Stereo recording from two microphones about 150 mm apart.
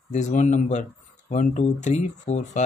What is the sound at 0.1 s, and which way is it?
A man's voice, 50° left (ahead or behind).